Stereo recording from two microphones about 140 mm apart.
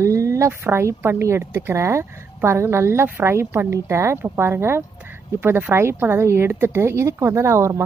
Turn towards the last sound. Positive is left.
turn(degrees=-20)  # may be behind; listen again after turning